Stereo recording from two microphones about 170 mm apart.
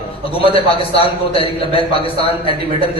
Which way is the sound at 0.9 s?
35° left (ahead or behind).